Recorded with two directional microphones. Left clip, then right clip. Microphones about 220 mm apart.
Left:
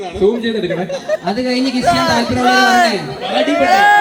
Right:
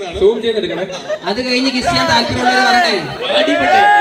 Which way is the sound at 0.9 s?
45° left (ahead or behind).